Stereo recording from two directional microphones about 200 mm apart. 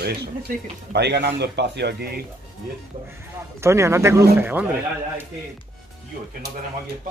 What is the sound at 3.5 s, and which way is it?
Speech, 15° right (ahead or behind).